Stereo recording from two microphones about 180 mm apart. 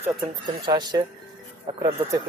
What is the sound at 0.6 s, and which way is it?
Speech, 25° right (ahead or behind).